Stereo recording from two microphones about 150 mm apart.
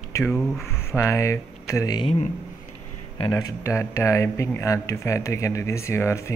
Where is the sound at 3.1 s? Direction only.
30° left (ahead or behind).